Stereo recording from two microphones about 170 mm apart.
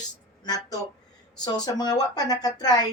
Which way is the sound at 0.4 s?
25° left (ahead or behind).